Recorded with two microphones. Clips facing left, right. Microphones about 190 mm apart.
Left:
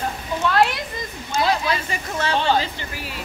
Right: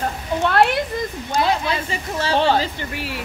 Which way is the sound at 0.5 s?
55° right (ahead or behind).